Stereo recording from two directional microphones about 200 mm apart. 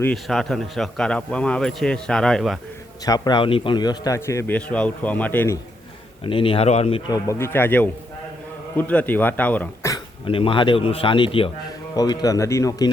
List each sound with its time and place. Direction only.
0.0 s a man's voice: 5° left (ahead or behind)
3.0 s a man's voice: 20° left (ahead or behind)
6.2 s a man's voice: 25° left (ahead or behind)
7.1 s a man's voice: 15° left (ahead or behind)
10.2 s a man's voice: 25° left (ahead or behind)